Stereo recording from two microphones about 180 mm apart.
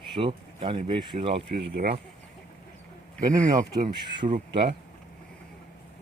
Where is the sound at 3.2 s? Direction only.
45° right (ahead or behind).